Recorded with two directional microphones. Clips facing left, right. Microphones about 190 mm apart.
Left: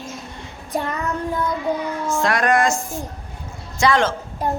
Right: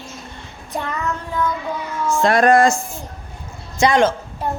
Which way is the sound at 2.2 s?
30° right (ahead or behind).